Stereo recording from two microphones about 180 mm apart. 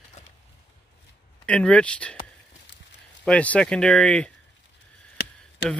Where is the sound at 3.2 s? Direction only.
5° left (ahead or behind).